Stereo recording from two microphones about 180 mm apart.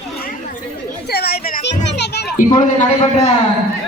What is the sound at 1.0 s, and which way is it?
Chatter, 60° left (ahead or behind).